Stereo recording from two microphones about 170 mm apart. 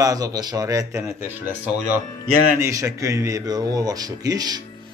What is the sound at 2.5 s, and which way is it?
Speech, 15° right (ahead or behind).